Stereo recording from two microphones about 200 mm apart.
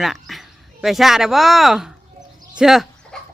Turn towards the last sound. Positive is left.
turn(degrees=0)  # may be behind; listen again after turning